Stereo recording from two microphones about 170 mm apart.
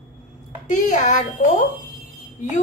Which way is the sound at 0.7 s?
45° left (ahead or behind).